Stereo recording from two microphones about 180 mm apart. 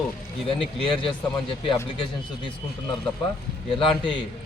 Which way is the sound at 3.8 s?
30° left (ahead or behind).